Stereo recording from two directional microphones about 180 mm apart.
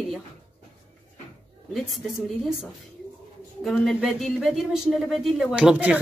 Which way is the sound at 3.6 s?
Centre (ahead or behind).